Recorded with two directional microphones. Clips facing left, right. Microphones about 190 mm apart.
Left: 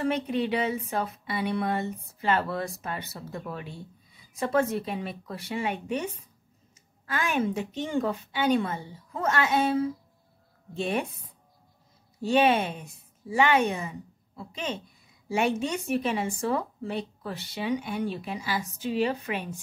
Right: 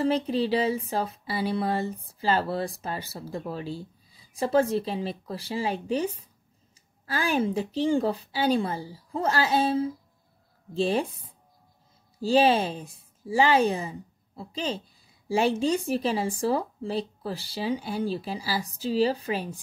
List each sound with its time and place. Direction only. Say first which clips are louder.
0.0 s a woman's voice: right 2 dB; 30° right (ahead or behind)